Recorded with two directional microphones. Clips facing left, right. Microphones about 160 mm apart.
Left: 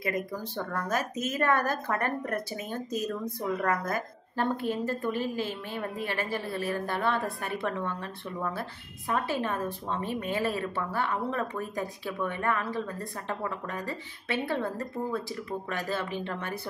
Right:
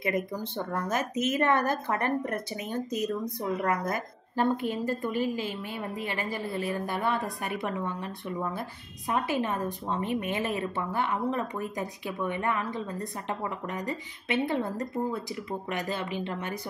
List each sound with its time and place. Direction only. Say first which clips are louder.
0.0 s speech: right 2 dB; 20° right (ahead or behind)